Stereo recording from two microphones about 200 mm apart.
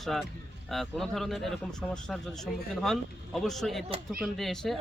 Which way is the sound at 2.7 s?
Centre (ahead or behind).